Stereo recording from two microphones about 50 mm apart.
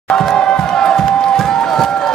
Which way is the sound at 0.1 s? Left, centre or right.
Centre.